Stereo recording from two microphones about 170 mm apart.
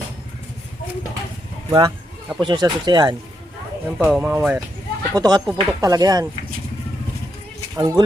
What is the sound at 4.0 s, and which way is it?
Speech, 5° right (ahead or behind).